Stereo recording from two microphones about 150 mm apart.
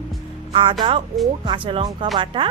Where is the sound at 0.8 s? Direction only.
35° right (ahead or behind).